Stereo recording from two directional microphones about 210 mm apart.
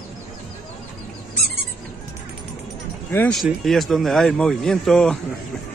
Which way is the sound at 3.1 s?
5° left (ahead or behind).